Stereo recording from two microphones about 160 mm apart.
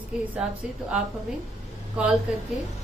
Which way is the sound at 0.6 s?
5° right (ahead or behind).